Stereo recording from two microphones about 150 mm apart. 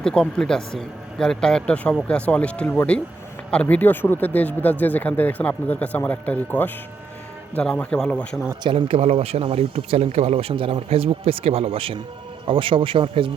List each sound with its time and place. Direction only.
0.0 s speech: 5° left (ahead or behind)
8.6 s speech: 40° right (ahead or behind)